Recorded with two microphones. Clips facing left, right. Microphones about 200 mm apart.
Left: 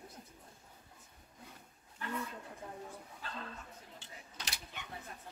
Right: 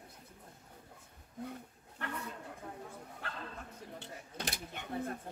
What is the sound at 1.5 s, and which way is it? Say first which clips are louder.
Wild animals: right 11 dB; 65° right (ahead or behind).